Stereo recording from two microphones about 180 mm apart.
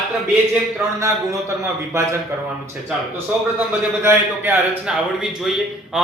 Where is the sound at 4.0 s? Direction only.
15° right (ahead or behind).